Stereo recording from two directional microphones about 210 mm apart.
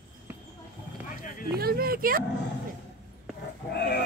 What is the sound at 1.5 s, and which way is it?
Speech, 45° right (ahead or behind).